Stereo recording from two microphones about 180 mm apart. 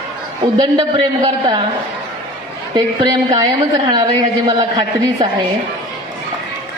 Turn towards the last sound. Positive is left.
turn(degrees=-20)  # may be behind; listen again after turning